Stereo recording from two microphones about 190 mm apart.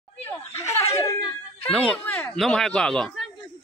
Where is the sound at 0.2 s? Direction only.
15° left (ahead or behind).